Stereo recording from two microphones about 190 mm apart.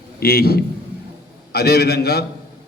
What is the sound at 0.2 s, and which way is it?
A man's voice, 55° left (ahead or behind).